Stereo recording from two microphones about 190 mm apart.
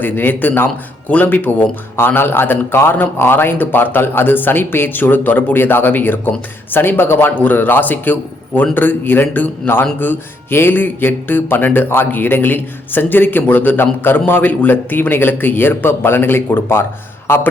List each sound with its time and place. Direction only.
0.0 s a man's voice: 10° left (ahead or behind)